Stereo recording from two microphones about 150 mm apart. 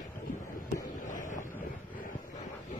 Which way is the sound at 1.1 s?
60° left (ahead or behind).